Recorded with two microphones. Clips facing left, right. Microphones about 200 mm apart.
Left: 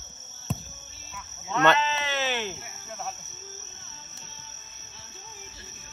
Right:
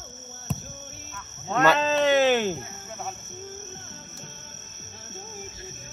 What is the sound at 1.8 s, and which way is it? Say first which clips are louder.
Speech: right 9 dB; 50° right (ahead or behind).